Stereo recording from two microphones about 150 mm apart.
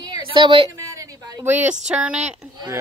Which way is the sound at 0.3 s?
35° right (ahead or behind).